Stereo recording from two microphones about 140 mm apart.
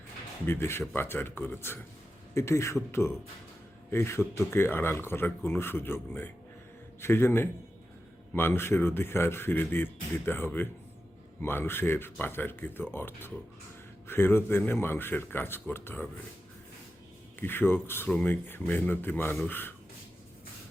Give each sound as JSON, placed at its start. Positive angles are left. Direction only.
{"t": 0.4, "sound": "a man's voice", "side_deg": 15}
{"t": 17.4, "sound": "speech", "side_deg": 15}